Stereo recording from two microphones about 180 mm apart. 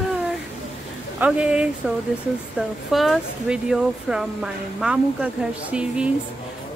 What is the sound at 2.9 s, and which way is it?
Speech, centre (ahead or behind).